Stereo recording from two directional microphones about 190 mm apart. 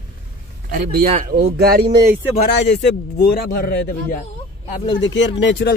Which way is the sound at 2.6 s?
60° left (ahead or behind).